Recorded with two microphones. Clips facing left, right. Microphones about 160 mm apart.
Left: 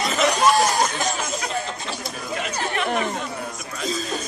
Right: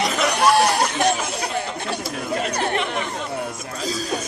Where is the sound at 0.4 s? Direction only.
65° right (ahead or behind).